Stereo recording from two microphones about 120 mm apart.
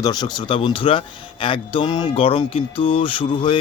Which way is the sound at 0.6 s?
45° left (ahead or behind).